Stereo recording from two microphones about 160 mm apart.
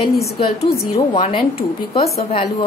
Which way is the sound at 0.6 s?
35° left (ahead or behind).